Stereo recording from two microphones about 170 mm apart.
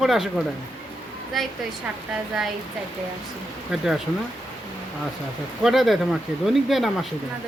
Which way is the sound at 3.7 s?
5° right (ahead or behind).